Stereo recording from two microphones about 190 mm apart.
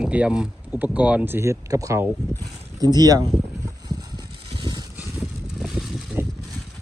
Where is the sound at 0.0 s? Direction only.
5° right (ahead or behind).